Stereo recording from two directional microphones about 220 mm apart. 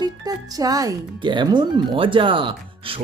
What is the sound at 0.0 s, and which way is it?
Speech, 15° right (ahead or behind).